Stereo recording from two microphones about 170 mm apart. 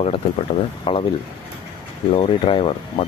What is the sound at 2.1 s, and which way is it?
Speech, 30° left (ahead or behind).